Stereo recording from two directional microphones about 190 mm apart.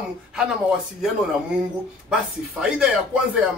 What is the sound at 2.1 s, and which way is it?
Speech, 5° right (ahead or behind).